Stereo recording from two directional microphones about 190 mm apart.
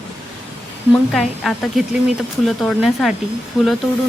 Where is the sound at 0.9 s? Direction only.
Centre (ahead or behind).